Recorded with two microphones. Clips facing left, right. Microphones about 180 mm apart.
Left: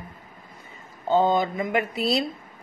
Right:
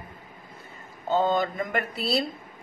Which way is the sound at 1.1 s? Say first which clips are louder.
Left 3 dB; 15° left (ahead or behind).